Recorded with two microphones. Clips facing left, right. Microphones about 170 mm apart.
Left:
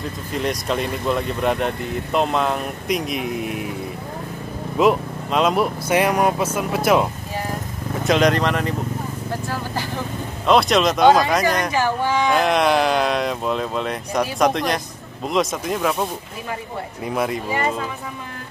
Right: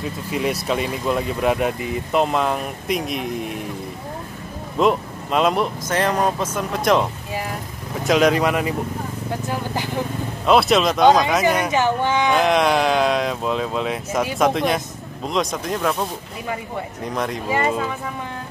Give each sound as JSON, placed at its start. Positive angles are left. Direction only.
{"t": 0.3, "sound": "speech", "side_deg": -5}
{"t": 4.7, "sound": "speech", "side_deg": 0}
{"t": 5.9, "sound": "speech", "side_deg": 10}
{"t": 8.1, "sound": "speech", "side_deg": -5}
{"t": 10.4, "sound": "speech", "side_deg": -5}
{"t": 11.7, "sound": "speech", "side_deg": -20}
{"t": 12.3, "sound": "speech", "side_deg": 0}